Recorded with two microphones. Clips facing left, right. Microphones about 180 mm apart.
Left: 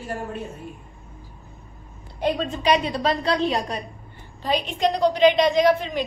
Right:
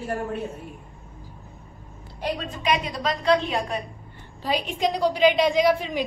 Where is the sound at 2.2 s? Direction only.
30° left (ahead or behind).